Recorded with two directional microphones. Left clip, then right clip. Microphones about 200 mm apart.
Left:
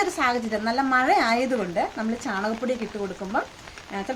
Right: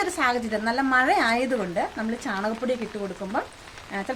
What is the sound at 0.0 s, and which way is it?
A woman's voice, centre (ahead or behind).